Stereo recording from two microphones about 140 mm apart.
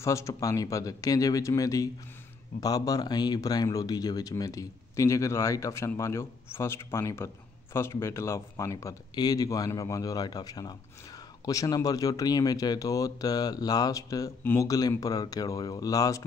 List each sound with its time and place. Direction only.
0.0 s speech: 20° left (ahead or behind)